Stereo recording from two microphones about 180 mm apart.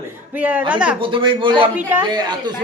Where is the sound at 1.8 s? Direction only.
10° right (ahead or behind).